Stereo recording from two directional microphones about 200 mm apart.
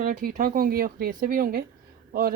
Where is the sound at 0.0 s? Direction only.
45° right (ahead or behind).